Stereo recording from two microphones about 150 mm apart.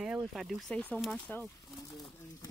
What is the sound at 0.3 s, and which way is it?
Speech, centre (ahead or behind).